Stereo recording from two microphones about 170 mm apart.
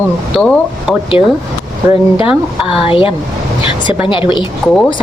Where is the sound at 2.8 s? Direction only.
30° left (ahead or behind).